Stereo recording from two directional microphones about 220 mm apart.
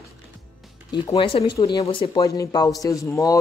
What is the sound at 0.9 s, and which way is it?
Speech, 20° left (ahead or behind).